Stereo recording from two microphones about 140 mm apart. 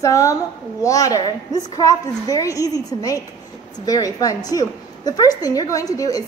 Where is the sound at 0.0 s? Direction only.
20° left (ahead or behind).